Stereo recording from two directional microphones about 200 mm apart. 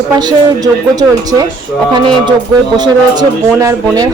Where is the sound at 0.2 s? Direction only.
20° right (ahead or behind).